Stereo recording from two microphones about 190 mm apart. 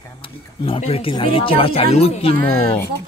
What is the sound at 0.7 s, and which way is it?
Speech, 30° left (ahead or behind).